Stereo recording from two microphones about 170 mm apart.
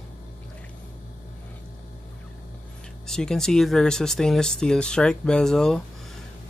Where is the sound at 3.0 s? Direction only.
5° left (ahead or behind).